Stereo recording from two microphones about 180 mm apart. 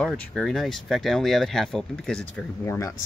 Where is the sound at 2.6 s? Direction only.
15° left (ahead or behind).